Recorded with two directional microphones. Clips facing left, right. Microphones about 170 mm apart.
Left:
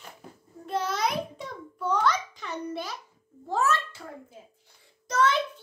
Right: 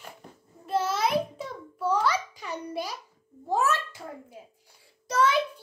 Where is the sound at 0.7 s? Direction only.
5° right (ahead or behind).